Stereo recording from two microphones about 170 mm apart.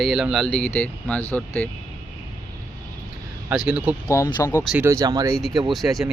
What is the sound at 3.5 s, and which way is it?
Speech, 5° right (ahead or behind).